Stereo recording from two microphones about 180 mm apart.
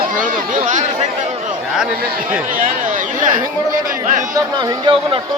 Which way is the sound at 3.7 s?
45° right (ahead or behind).